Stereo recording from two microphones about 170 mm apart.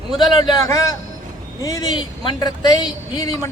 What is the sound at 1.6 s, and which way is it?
A man's voice, 20° left (ahead or behind).